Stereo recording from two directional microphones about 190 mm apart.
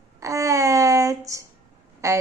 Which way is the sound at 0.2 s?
15° right (ahead or behind).